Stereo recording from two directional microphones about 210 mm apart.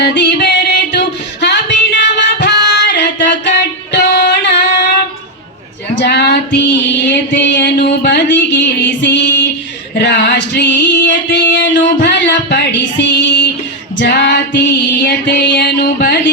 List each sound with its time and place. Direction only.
0.0 s music: 55° left (ahead or behind)
5.9 s female singing: 55° left (ahead or behind)
11.5 s music: 55° left (ahead or behind)